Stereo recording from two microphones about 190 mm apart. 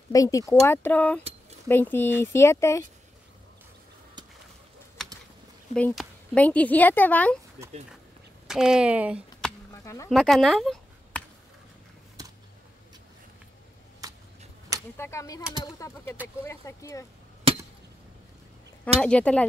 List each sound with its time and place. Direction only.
0.1 s a woman's voice: 20° left (ahead or behind)
5.7 s a woman's voice: 5° left (ahead or behind)
8.5 s speech: 5° right (ahead or behind)
9.7 s a sound: 15° left (ahead or behind)
10.0 s speech: centre (ahead or behind)
14.0 s a sound: 20° right (ahead or behind)
15.0 s a woman's voice: 15° left (ahead or behind)
18.9 s speech: 5° left (ahead or behind)